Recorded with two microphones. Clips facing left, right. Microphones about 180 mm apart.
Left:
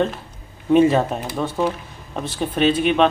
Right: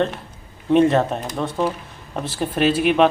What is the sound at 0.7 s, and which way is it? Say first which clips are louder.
Speech: left 1 dB; 5° left (ahead or behind).